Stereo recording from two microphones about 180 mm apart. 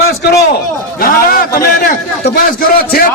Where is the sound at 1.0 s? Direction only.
55° left (ahead or behind).